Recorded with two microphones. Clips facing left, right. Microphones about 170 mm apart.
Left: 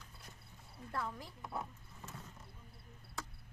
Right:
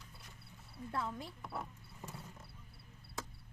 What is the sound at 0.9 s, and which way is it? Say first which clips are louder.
Speech: right 2 dB; 25° right (ahead or behind).